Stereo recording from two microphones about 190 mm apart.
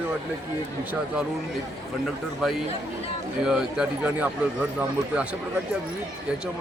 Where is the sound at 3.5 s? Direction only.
5° right (ahead or behind).